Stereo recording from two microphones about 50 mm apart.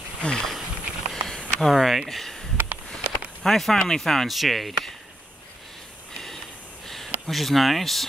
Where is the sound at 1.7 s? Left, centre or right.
Centre.